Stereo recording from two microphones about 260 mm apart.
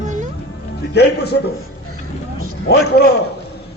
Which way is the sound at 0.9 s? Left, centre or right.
Left.